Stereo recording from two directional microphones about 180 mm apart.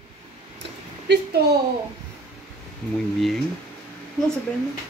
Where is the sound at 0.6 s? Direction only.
70° right (ahead or behind).